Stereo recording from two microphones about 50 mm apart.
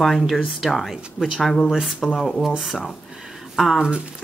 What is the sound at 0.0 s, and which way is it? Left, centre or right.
Speech, centre.